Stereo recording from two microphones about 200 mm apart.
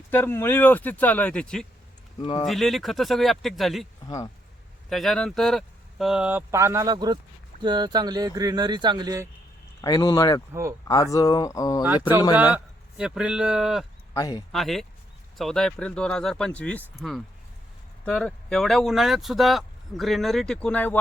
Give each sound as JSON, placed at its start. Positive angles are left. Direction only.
{"t": 0.1, "sound": "speech", "side_deg": 10}
{"t": 4.0, "sound": "speech", "side_deg": 20}
{"t": 4.9, "sound": "speech", "side_deg": 0}
{"t": 9.8, "sound": "speech", "side_deg": 20}
{"t": 10.5, "sound": "speech", "side_deg": -15}
{"t": 10.8, "sound": "speech", "side_deg": 15}
{"t": 12.4, "sound": "speech", "side_deg": -10}
{"t": 14.1, "sound": "speech", "side_deg": 20}
{"t": 14.5, "sound": "speech", "side_deg": 0}